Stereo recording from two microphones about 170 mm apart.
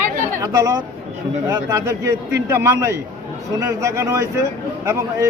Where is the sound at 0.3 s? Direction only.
20° right (ahead or behind).